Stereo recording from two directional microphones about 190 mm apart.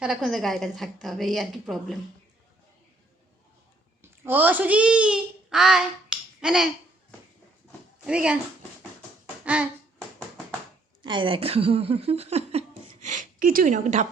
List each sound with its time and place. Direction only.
0.0 s a woman's voice: centre (ahead or behind)
4.0 s a child's voice: 10° right (ahead or behind)
8.0 s a woman's voice: 5° right (ahead or behind)
9.4 s a sound: 5° right (ahead or behind)
11.0 s speech: 25° right (ahead or behind)